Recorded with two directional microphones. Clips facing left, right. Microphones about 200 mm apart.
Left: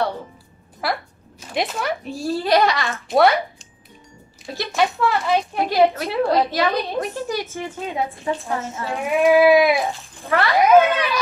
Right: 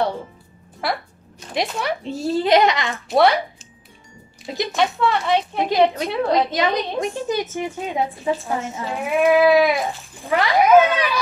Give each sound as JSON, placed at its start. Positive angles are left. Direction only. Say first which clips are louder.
{"t": 0.8, "sound": "speech", "louder": "even", "side_deg": 0}
{"t": 2.0, "sound": "a child's voice", "louder": "right 3 dB", "side_deg": -20}
{"t": 3.1, "sound": "speech", "louder": "even", "side_deg": 0}
{"t": 4.7, "sound": "speech", "louder": "left 1 dB", "side_deg": 0}
{"t": 6.5, "sound": "a woman's voice", "louder": "even", "side_deg": -15}
{"t": 8.8, "sound": "speech", "louder": "left 1 dB", "side_deg": 0}
{"t": 9.3, "sound": "goat", "louder": "left 1 dB", "side_deg": 15}
{"t": 10.2, "sound": "a woman's voice", "louder": "even", "side_deg": -15}
{"t": 10.6, "sound": "goat", "louder": "even", "side_deg": 15}